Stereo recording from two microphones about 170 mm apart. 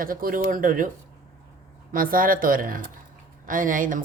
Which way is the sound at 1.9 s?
55° right (ahead or behind).